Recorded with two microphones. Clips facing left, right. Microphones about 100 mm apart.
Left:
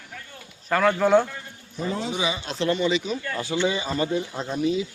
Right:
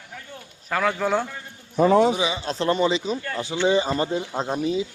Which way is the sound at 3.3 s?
20° right (ahead or behind).